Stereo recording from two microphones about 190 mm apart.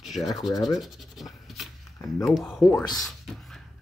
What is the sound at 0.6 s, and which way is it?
Scratch, centre (ahead or behind).